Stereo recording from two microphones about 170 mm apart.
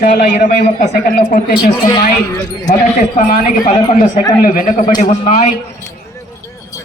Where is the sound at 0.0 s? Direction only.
60° left (ahead or behind).